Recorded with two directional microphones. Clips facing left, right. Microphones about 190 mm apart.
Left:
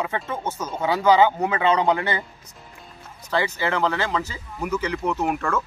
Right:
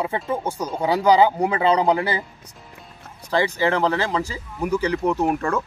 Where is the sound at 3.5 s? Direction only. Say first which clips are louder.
Right 3 dB; 35° right (ahead or behind).